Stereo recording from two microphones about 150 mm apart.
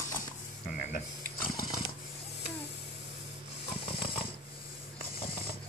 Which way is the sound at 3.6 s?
40° left (ahead or behind).